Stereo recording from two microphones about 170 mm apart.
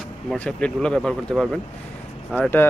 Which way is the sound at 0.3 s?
5° left (ahead or behind).